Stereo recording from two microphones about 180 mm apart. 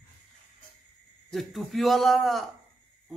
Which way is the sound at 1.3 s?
Centre (ahead or behind).